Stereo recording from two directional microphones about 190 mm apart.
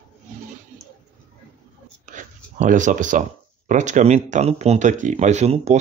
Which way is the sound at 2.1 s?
40° right (ahead or behind).